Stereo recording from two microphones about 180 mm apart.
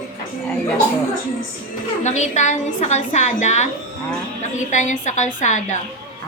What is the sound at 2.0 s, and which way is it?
A woman's voice, 40° left (ahead or behind).